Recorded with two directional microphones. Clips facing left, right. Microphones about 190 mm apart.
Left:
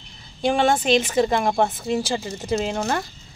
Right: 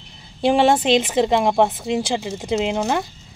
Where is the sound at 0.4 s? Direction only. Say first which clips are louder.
Right 4 dB; 25° right (ahead or behind).